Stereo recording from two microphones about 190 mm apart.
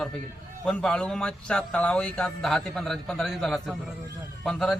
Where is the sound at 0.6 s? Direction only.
5° left (ahead or behind).